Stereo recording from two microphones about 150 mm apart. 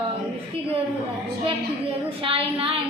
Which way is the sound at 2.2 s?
40° right (ahead or behind).